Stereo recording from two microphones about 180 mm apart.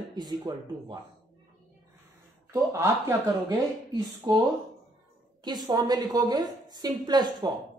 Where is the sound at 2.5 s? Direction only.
15° right (ahead or behind).